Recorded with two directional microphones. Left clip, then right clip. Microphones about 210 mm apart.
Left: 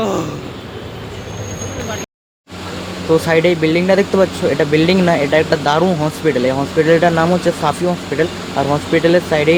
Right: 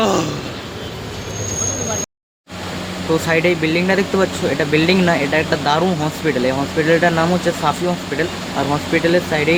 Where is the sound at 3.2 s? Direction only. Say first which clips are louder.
Even; 15° left (ahead or behind).